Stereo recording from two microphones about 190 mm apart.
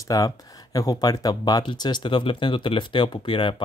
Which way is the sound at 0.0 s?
20° left (ahead or behind).